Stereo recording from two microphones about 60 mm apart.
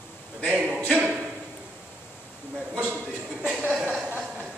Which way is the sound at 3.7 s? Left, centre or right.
Centre.